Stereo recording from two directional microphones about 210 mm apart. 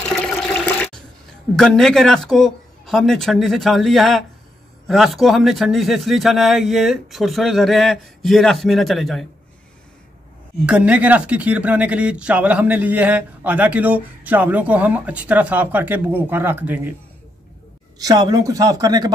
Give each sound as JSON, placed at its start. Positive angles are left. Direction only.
{"t": 1.6, "sound": "speech", "side_deg": 0}
{"t": 10.6, "sound": "speech", "side_deg": -5}
{"t": 17.9, "sound": "speech", "side_deg": -15}